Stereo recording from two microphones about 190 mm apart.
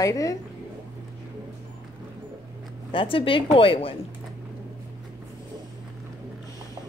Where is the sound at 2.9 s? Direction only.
30° left (ahead or behind).